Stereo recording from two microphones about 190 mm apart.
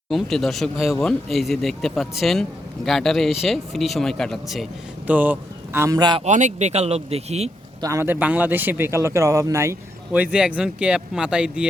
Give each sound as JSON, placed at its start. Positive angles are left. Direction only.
{"t": 0.1, "sound": "speech", "side_deg": 0}
{"t": 6.2, "sound": "speech", "side_deg": -40}
{"t": 7.8, "sound": "a man's voice", "side_deg": -15}